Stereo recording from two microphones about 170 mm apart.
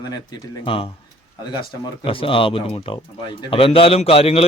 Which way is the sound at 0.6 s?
30° left (ahead or behind).